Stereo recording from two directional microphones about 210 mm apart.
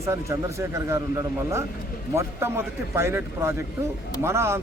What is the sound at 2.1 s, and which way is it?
A man's voice, 10° right (ahead or behind).